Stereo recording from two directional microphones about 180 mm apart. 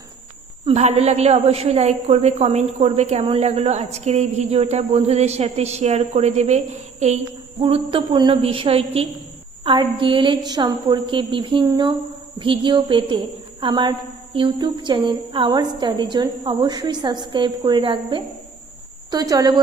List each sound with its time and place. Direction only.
0.6 s a woman's voice: 35° right (ahead or behind)
7.3 s a woman's voice: 25° right (ahead or behind)